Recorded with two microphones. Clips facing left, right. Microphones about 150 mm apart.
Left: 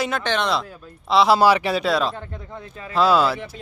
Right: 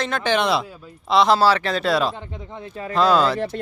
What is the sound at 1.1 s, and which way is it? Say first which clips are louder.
Speech: even; centre (ahead or behind).